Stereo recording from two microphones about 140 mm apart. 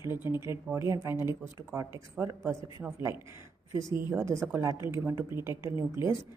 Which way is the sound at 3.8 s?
20° right (ahead or behind).